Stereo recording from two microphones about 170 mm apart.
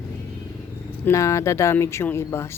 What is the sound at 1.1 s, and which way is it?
Speech, 20° left (ahead or behind).